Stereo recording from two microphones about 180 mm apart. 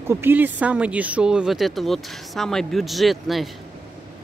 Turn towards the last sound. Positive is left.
turn(degrees=0)  # may be behind; listen again after turning